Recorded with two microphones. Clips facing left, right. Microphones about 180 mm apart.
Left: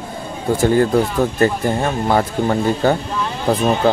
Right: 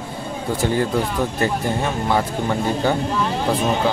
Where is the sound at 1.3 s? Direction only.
50° left (ahead or behind).